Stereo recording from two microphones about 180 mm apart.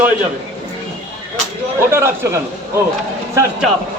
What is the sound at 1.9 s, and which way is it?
Speech, 15° right (ahead or behind).